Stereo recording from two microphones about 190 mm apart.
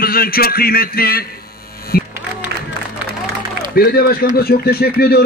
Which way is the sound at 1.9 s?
55° left (ahead or behind).